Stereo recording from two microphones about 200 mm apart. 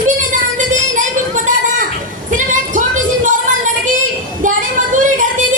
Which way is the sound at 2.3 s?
40° right (ahead or behind).